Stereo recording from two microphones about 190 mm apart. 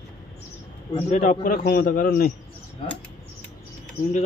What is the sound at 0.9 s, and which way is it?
A man's voice, 35° left (ahead or behind).